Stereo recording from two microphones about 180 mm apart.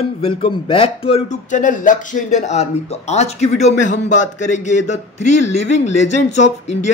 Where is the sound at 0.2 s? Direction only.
30° left (ahead or behind).